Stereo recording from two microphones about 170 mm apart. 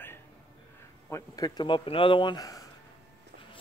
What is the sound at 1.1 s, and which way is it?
Speech, 20° left (ahead or behind).